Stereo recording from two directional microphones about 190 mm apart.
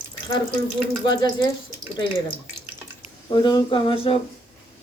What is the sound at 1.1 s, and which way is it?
Speech, 20° left (ahead or behind).